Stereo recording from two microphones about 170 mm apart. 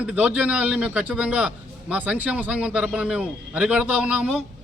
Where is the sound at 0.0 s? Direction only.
5° right (ahead or behind).